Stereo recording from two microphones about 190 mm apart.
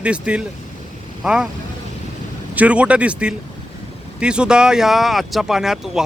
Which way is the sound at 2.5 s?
5° right (ahead or behind).